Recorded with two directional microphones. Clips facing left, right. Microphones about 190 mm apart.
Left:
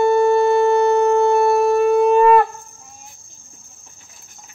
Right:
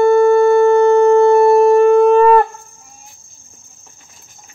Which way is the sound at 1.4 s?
45° right (ahead or behind).